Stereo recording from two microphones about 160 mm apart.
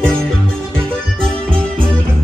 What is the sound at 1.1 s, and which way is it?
Music, 35° right (ahead or behind).